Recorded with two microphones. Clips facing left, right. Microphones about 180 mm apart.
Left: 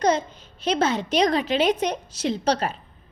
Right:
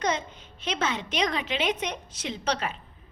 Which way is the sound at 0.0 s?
35° left (ahead or behind).